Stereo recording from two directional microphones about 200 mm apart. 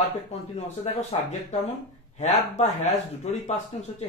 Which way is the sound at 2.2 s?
35° left (ahead or behind).